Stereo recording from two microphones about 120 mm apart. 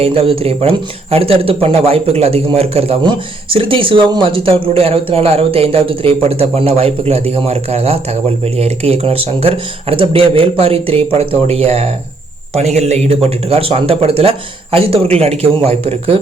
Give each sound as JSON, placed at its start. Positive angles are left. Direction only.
{"t": 0.0, "sound": "speech", "side_deg": -50}
{"t": 3.0, "sound": "speech", "side_deg": -45}